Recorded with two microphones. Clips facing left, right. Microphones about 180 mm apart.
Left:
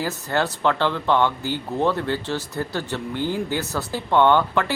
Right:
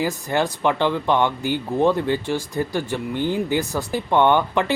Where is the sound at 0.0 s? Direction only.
15° right (ahead or behind).